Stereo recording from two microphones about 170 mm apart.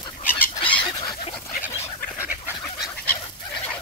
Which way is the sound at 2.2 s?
10° right (ahead or behind).